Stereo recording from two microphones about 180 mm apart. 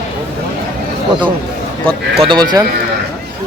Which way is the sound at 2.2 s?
25° right (ahead or behind).